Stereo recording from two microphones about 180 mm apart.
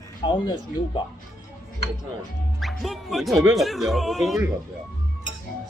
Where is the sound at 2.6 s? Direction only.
Centre (ahead or behind).